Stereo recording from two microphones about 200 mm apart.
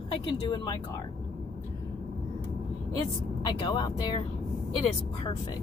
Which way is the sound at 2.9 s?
20° left (ahead or behind).